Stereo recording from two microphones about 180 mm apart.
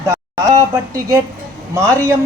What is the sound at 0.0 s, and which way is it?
A woman's voice, 20° right (ahead or behind).